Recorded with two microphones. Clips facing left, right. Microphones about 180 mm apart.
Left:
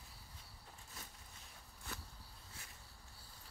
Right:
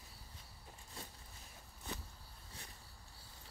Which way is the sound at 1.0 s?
30° right (ahead or behind).